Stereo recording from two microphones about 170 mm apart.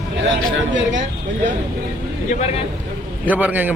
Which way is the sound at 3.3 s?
10° right (ahead or behind).